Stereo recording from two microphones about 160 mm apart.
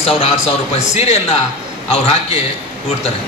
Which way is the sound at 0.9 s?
40° left (ahead or behind).